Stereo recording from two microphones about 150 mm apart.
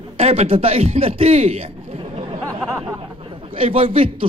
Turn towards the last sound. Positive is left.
turn(degrees=-35)  # may be behind; listen again after turning